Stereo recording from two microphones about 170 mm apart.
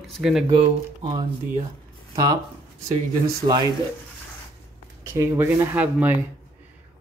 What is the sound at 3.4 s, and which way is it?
Speech, 30° right (ahead or behind).